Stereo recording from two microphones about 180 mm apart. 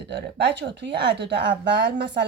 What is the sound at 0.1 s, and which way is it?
Speech, 75° right (ahead or behind).